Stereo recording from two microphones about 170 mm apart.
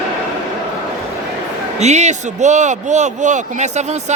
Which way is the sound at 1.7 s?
40° right (ahead or behind).